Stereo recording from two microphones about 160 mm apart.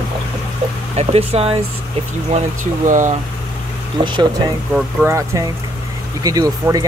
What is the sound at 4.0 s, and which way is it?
Speech, 30° right (ahead or behind).